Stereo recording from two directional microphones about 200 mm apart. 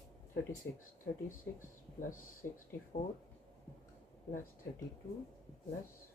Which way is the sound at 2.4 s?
60° left (ahead or behind).